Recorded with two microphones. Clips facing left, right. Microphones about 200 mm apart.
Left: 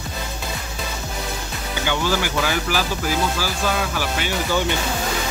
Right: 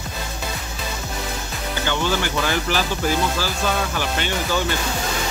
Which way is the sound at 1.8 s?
10° left (ahead or behind).